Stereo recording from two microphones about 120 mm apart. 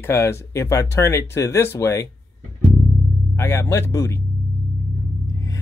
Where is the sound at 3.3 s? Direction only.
20° left (ahead or behind).